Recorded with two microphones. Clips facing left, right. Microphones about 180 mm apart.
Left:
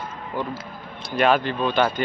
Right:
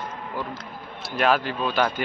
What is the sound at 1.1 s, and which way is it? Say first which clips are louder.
Speech: left 3 dB; centre (ahead or behind).